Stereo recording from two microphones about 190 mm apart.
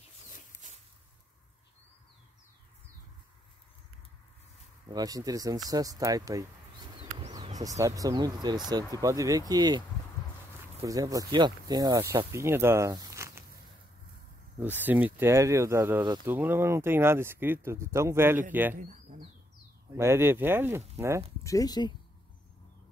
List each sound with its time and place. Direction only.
4.8 s speech: 20° right (ahead or behind)
14.6 s speech: 10° right (ahead or behind)
18.8 s bird: 45° right (ahead or behind)
19.9 s speech: 15° right (ahead or behind)
21.5 s speech: 20° left (ahead or behind)